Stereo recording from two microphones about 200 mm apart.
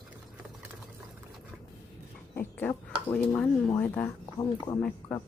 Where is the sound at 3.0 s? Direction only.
5° left (ahead or behind).